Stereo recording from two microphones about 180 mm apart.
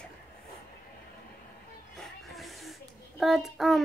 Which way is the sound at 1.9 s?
Centre (ahead or behind).